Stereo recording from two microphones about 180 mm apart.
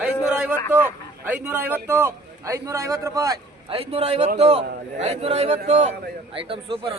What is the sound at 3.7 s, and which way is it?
A man's voice, 30° right (ahead or behind).